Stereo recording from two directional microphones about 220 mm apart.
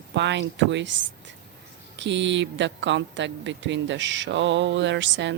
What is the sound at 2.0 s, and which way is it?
Speech, 55° right (ahead or behind).